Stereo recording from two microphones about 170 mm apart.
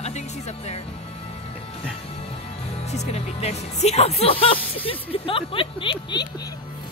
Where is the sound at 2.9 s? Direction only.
40° left (ahead or behind).